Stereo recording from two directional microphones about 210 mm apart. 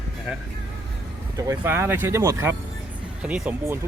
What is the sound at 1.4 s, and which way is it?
Speech, 10° right (ahead or behind).